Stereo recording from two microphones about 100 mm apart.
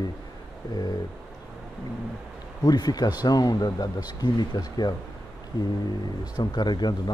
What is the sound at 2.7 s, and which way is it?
Speech, 40° left (ahead or behind).